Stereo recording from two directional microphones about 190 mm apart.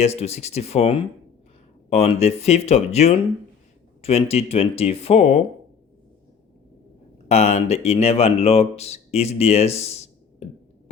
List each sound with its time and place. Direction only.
0.0 s speech: 35° left (ahead or behind)
7.3 s speech: 35° left (ahead or behind)
10.4 s a sound: 35° left (ahead or behind)